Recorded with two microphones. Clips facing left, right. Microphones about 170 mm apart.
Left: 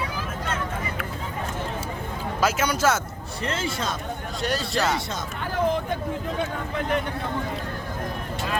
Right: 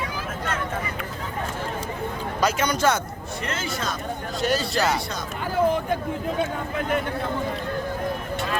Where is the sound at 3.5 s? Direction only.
30° left (ahead or behind).